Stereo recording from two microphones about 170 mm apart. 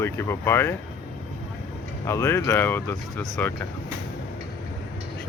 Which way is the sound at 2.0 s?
15° left (ahead or behind).